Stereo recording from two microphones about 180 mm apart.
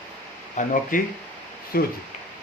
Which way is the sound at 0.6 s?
40° left (ahead or behind).